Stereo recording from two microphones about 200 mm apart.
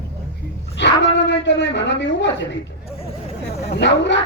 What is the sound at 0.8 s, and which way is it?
A woman's voice, 60° left (ahead or behind).